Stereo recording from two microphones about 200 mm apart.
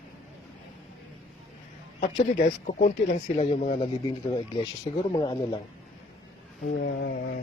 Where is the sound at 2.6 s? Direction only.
40° left (ahead or behind).